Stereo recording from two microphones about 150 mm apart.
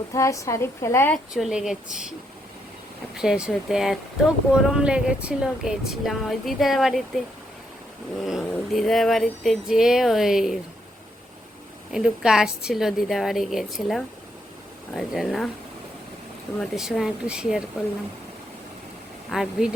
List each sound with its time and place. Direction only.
0.1 s a woman's voice: 20° left (ahead or behind)
1.1 s speech: centre (ahead or behind)
3.2 s speech: 5° right (ahead or behind)
8.2 s speech: centre (ahead or behind)
11.9 s speech: 5° right (ahead or behind)
16.6 s speech: centre (ahead or behind)
19.3 s speech: 5° right (ahead or behind)